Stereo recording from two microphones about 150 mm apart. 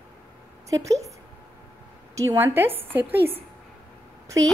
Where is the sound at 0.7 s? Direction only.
20° right (ahead or behind).